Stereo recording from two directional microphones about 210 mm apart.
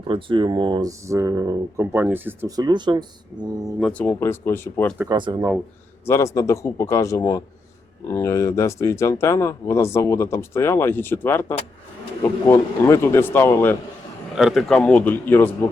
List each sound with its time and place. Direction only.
0.1 s speech: 25° right (ahead or behind)
3.8 s speech: 5° left (ahead or behind)
4.9 s speech: 20° right (ahead or behind)
6.1 s speech: 15° left (ahead or behind)
14.3 s speech: centre (ahead or behind)